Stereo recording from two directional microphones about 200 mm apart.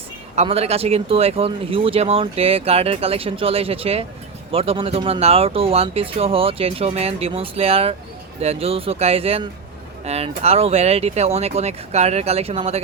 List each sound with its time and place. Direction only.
0.3 s speech: 30° right (ahead or behind)